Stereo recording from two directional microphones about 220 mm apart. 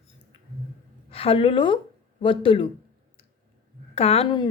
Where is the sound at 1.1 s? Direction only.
25° left (ahead or behind).